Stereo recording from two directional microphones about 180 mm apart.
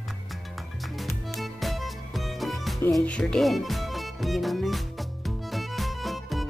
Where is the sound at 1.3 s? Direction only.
Centre (ahead or behind).